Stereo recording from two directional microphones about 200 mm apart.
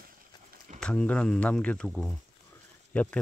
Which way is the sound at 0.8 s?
5° left (ahead or behind).